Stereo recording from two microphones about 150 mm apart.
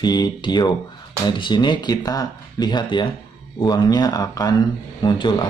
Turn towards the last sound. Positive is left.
turn(degrees=30)  # may be behind; listen again after turning